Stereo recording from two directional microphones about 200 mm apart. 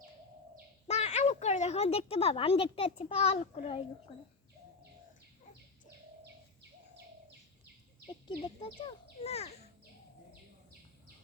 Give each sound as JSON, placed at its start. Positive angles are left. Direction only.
{"t": 0.9, "sound": "speech", "side_deg": 35}
{"t": 8.6, "sound": "speech", "side_deg": 30}